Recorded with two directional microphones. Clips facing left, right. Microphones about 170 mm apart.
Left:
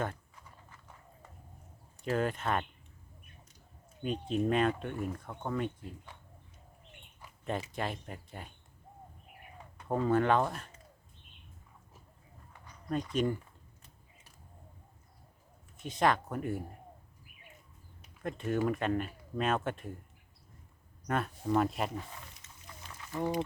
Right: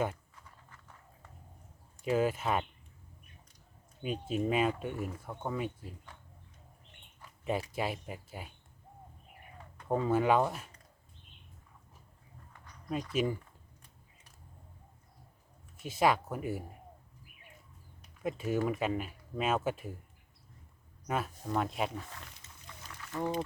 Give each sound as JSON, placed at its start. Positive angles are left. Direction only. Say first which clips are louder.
{"t": 2.0, "sound": "speech", "louder": "right 2 dB", "side_deg": -5}
{"t": 4.0, "sound": "speech", "louder": "left 1 dB", "side_deg": -5}
{"t": 7.4, "sound": "speech", "louder": "right 2 dB", "side_deg": -5}
{"t": 9.9, "sound": "speech", "louder": "even", "side_deg": -5}
{"t": 12.9, "sound": "speech", "louder": "left 1 dB", "side_deg": -5}
{"t": 15.8, "sound": "speech", "louder": "right 1 dB", "side_deg": -5}
{"t": 18.2, "sound": "speech", "louder": "even", "side_deg": -5}
{"t": 21.4, "sound": "speech", "louder": "left 6 dB", "side_deg": 0}
{"t": 23.0, "sound": "a sound", "louder": "left 1 dB", "side_deg": 20}